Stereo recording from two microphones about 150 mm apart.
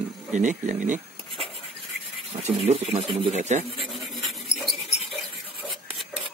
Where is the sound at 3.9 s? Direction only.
Centre (ahead or behind).